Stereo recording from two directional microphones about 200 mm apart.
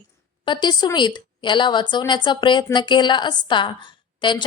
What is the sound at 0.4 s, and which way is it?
A woman's voice, 25° left (ahead or behind).